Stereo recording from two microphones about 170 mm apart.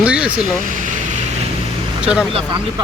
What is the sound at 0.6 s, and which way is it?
Speech, 50° right (ahead or behind).